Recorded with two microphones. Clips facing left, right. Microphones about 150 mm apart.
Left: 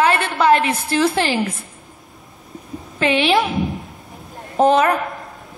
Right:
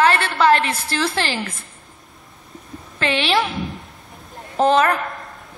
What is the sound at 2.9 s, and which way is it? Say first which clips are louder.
Speech: left 3 dB; 10° left (ahead or behind).